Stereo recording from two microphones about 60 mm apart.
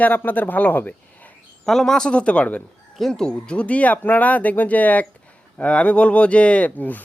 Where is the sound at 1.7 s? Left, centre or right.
Centre.